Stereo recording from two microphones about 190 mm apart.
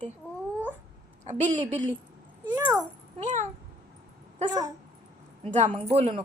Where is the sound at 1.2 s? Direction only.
40° right (ahead or behind).